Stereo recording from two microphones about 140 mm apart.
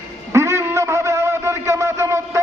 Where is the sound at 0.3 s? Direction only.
20° right (ahead or behind).